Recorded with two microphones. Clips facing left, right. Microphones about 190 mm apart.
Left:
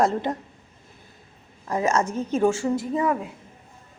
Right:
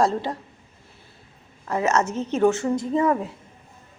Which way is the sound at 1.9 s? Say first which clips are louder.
Right 1 dB; 10° left (ahead or behind).